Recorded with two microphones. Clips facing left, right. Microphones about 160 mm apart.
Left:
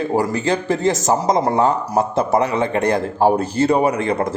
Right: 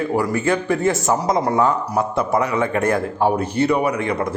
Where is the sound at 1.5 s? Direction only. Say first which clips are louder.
Left 1 dB; 30° left (ahead or behind).